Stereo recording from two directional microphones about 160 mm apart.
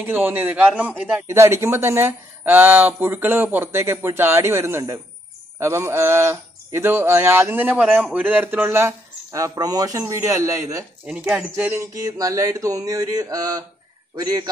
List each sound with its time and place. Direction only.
0.0 s speech: 15° right (ahead or behind)
11.1 s speech: 10° right (ahead or behind); by 14.5 s 25° right (ahead or behind)